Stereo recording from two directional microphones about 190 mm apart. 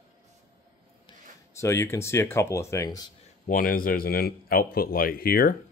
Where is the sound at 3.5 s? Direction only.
50° left (ahead or behind).